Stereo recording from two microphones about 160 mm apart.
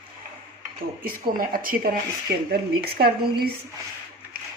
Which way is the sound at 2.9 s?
75° right (ahead or behind).